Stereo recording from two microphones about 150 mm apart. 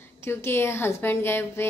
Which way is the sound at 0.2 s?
15° left (ahead or behind).